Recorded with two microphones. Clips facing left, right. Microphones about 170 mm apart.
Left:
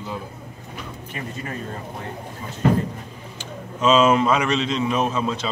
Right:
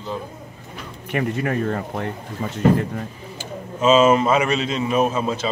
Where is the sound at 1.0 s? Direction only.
65° right (ahead or behind).